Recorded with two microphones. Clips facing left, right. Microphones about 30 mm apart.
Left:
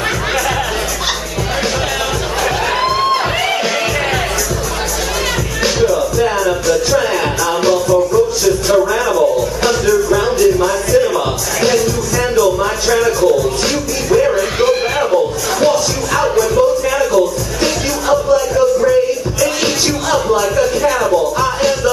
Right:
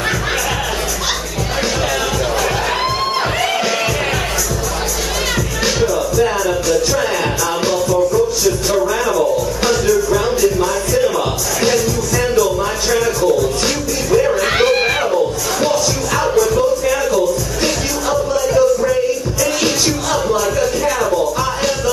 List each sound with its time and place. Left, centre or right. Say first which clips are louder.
5.8 s music: left 2 dB; centre
14.6 s a sound: left 1 dB; right
15.6 s music: left 3 dB; centre
19.6 s music: left 1 dB; centre